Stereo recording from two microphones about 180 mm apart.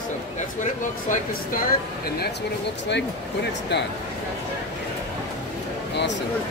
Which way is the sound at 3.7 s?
70° left (ahead or behind).